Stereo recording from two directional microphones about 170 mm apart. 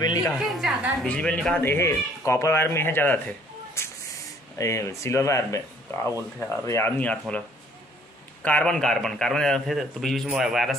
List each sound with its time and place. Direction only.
0.0 s a woman's voice: 25° left (ahead or behind)
0.3 s a woman's voice: centre (ahead or behind)